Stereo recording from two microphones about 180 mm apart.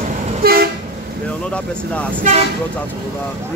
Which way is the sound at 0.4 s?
55° right (ahead or behind).